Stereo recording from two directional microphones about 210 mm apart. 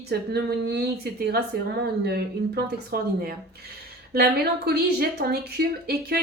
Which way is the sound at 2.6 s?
45° right (ahead or behind).